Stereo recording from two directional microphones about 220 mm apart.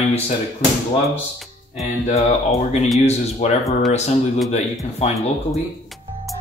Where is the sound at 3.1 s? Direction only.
30° left (ahead or behind).